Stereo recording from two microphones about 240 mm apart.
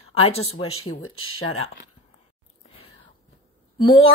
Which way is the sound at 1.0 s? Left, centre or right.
Left.